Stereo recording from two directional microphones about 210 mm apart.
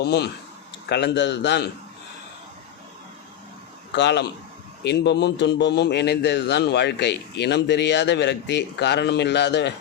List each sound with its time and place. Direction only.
0.0 s a man's voice: 50° left (ahead or behind)
3.9 s a man's voice: 55° left (ahead or behind)